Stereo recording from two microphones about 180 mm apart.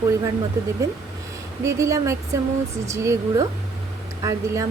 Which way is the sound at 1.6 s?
15° right (ahead or behind).